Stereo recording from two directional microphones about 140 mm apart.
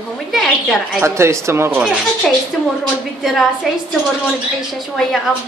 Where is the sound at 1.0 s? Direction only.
20° right (ahead or behind).